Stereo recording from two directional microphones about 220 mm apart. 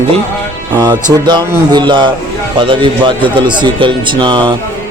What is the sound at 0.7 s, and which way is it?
Speech, 15° right (ahead or behind).